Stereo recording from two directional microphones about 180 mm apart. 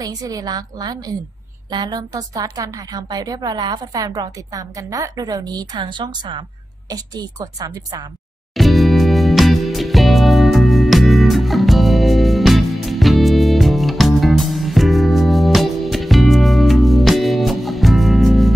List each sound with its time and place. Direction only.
0.0 s a woman's voice: 20° right (ahead or behind)
8.5 s music: centre (ahead or behind)